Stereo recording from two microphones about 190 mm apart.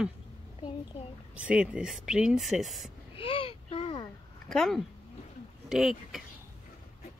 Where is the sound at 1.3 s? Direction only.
5° right (ahead or behind).